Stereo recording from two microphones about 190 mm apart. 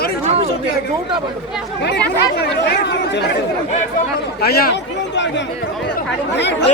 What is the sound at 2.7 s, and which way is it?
Speech, 65° left (ahead or behind).